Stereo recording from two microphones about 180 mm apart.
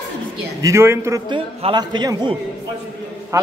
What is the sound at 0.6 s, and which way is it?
A man's voice, 15° right (ahead or behind).